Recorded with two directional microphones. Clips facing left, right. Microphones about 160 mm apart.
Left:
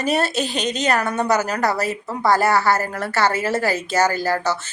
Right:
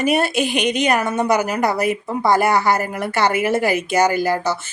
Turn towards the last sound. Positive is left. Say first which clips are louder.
# right 2 dB
turn(degrees=-15)  # may be behind; listen again after turning